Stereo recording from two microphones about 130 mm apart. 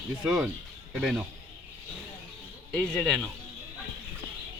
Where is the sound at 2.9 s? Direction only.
Centre (ahead or behind).